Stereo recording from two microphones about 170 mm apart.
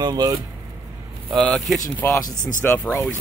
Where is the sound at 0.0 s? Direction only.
25° right (ahead or behind).